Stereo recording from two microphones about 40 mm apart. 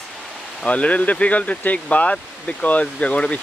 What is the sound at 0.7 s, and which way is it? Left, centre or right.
Speech, left.